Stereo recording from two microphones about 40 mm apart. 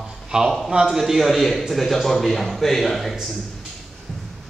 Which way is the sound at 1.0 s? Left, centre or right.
Centre.